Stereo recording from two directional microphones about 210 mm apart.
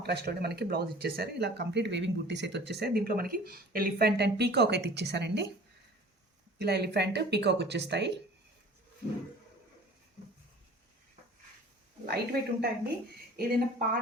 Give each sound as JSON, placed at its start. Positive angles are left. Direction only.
{"t": 0.0, "sound": "speech", "side_deg": -50}
{"t": 6.6, "sound": "speech", "side_deg": -50}
{"t": 12.0, "sound": "speech", "side_deg": -50}